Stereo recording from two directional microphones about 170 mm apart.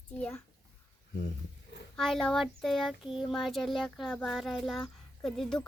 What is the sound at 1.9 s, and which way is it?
Child singing, centre (ahead or behind).